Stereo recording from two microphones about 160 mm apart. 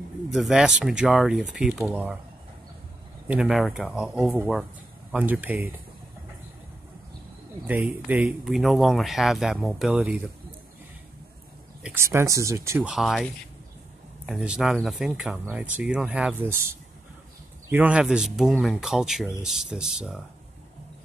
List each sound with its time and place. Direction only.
0.3 s speech: centre (ahead or behind)
3.3 s speech: 5° right (ahead or behind)
7.6 s speech: 10° right (ahead or behind)
11.8 s speech: 15° right (ahead or behind)
12.9 s speech: centre (ahead or behind)
17.6 s speech: 10° right (ahead or behind)